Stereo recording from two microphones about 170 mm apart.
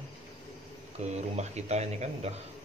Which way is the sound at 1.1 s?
40° right (ahead or behind).